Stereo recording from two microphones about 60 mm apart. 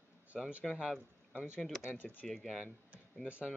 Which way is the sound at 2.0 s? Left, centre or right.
Left.